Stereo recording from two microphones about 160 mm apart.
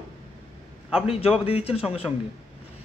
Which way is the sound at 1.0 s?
40° left (ahead or behind).